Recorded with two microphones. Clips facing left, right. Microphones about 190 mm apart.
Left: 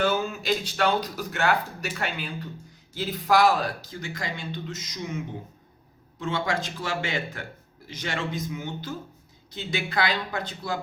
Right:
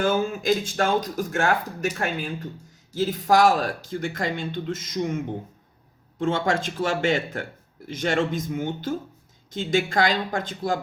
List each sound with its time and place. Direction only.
0.0 s speech: 50° right (ahead or behind)